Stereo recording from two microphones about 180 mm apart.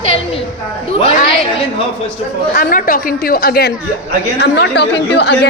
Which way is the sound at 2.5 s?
50° left (ahead or behind).